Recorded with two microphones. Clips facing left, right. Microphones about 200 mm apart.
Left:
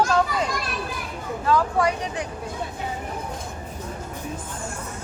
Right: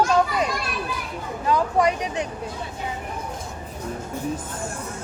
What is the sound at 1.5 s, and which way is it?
Speech, 20° right (ahead or behind).